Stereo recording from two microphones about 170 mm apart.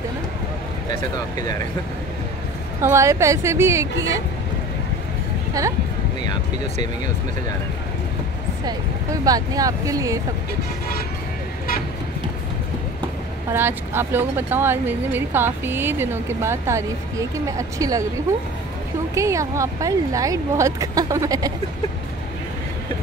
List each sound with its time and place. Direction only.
2.8 s speech: 15° right (ahead or behind)
5.5 s speech: 20° right (ahead or behind)
8.6 s speech: 20° right (ahead or behind)
13.5 s speech: 15° right (ahead or behind)
19.1 s speech: 20° right (ahead or behind)